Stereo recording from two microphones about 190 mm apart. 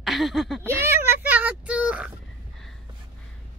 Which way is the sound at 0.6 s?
15° right (ahead or behind).